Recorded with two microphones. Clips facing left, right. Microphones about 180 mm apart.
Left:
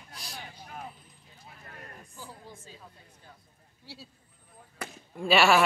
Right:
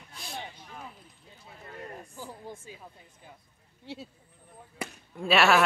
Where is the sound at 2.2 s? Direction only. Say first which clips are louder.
Right 3 dB; 15° right (ahead or behind).